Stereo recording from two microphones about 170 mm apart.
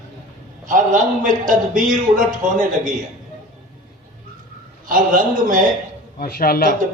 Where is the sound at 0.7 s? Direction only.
50° right (ahead or behind).